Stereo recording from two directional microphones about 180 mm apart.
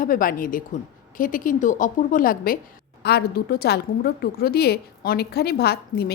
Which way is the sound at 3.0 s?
65° left (ahead or behind).